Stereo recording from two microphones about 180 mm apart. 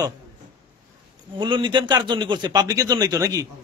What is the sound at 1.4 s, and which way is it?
A man's voice, 25° right (ahead or behind).